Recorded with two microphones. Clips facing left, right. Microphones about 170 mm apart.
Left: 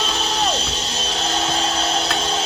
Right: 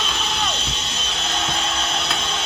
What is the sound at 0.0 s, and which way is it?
Music, 35° left (ahead or behind).